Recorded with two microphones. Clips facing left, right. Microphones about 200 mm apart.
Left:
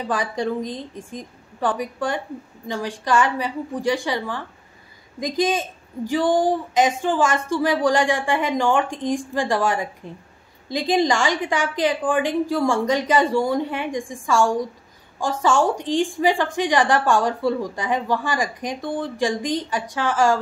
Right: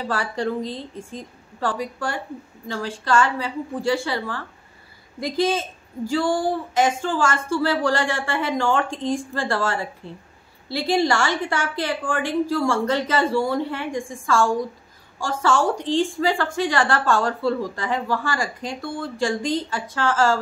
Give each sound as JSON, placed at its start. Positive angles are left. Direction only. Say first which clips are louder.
{"t": 0.0, "sound": "a woman's voice", "louder": "left 1 dB", "side_deg": 15}